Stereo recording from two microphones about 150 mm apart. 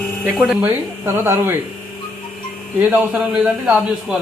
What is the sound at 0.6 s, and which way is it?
Speech, 15° right (ahead or behind).